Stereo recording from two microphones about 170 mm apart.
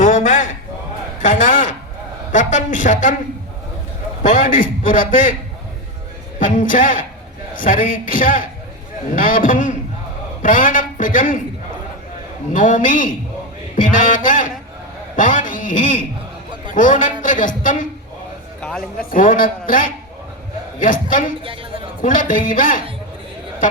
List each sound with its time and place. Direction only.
0.0 s a sound: 45° left (ahead or behind)
1.2 s a woman's voice: 50° left (ahead or behind)
4.2 s a woman's voice: 50° left (ahead or behind)
6.4 s a woman's voice: 50° left (ahead or behind)
12.5 s a woman's voice: 50° left (ahead or behind)
18.6 s a man's voice: 5° left (ahead or behind)
18.9 s a woman's voice: 55° left (ahead or behind)
21.4 s a woman's voice: 30° right (ahead or behind)
22.0 s a woman's voice: 50° left (ahead or behind)